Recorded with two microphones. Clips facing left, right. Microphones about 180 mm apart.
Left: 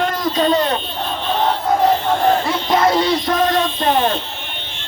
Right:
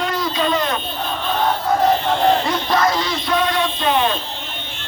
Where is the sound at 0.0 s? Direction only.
45° left (ahead or behind).